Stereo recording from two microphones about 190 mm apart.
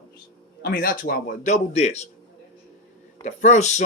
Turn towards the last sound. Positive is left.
turn(degrees=40)  # may be behind; listen again after turning